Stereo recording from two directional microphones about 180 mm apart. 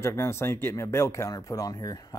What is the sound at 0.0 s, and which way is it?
Speech, 15° left (ahead or behind).